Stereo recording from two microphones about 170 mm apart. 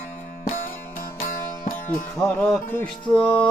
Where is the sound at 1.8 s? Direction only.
10° left (ahead or behind).